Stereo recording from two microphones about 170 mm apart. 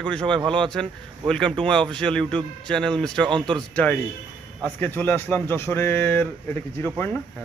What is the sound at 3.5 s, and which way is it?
A man's voice, 10° left (ahead or behind).